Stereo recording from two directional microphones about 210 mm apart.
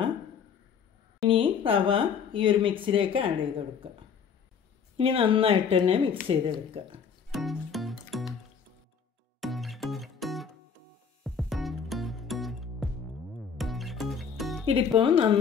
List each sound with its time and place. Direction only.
1.3 s speech: 25° right (ahead or behind)
4.9 s speech: 25° right (ahead or behind)
7.3 s music: centre (ahead or behind)
9.4 s music: centre (ahead or behind)
14.7 s speech: 25° right (ahead or behind)